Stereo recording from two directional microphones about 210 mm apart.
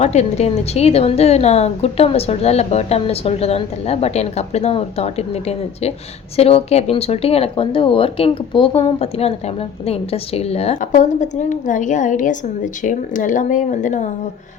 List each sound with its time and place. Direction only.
0.0 s speech: 30° left (ahead or behind)